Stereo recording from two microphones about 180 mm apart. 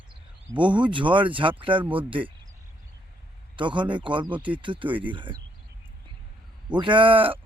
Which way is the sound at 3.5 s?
25° right (ahead or behind).